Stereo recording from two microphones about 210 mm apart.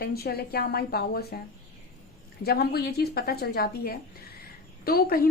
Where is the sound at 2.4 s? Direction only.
50° left (ahead or behind).